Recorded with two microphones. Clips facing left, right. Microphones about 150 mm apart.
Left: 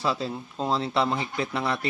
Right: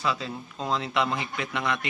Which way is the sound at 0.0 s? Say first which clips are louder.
Left 2 dB; 30° left (ahead or behind).